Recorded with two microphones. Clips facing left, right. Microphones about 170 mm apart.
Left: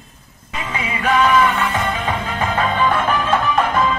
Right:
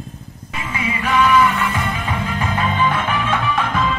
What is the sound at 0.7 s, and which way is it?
Music, 30° left (ahead or behind).